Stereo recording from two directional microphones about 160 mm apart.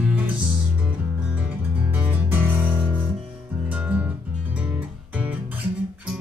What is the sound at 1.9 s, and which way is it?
Music, 10° right (ahead or behind).